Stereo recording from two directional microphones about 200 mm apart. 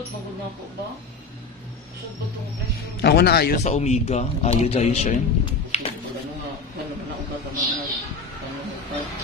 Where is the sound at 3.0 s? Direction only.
55° left (ahead or behind).